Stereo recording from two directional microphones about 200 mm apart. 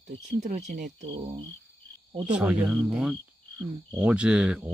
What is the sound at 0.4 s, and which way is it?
Speech, 40° right (ahead or behind).